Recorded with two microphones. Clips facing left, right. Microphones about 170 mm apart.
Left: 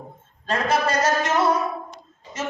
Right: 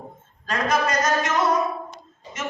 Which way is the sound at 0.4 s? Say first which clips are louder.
Left 1 dB; 30° left (ahead or behind).